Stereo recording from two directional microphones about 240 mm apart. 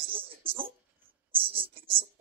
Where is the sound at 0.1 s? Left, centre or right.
Right.